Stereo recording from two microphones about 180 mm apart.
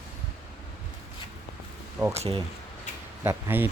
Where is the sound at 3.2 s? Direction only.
10° right (ahead or behind).